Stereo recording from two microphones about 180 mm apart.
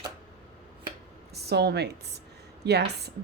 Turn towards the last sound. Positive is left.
turn(degrees=-65)  # may be behind; listen again after turning